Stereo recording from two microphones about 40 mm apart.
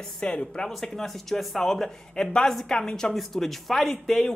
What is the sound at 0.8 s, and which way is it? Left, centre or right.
Speech, centre.